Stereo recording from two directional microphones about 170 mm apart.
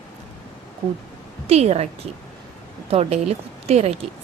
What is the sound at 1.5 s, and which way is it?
A woman's voice, 40° right (ahead or behind).